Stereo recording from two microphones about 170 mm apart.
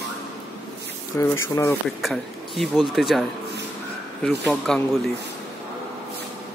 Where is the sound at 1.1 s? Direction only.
15° left (ahead or behind).